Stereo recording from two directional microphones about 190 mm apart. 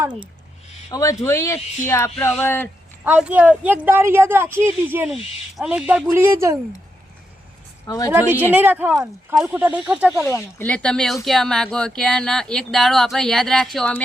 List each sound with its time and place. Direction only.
0.0 s speech: 25° right (ahead or behind)
0.9 s speech: 20° left (ahead or behind)
3.0 s a woman's voice: 5° right (ahead or behind)
7.9 s a woman's voice: 20° left (ahead or behind)
8.1 s a woman's voice: 10° right (ahead or behind)
10.2 s speech: 15° left (ahead or behind)